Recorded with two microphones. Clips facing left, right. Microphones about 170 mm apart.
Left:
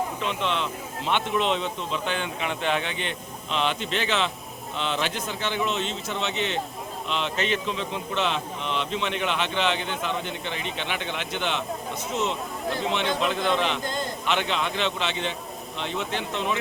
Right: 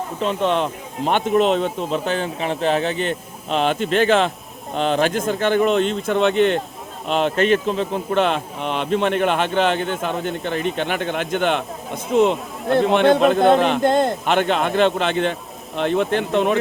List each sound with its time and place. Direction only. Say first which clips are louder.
0.2 s a man's voice: right 8 dB; 40° right (ahead or behind)